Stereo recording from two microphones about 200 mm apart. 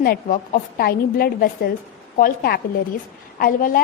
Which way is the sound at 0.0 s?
45° left (ahead or behind).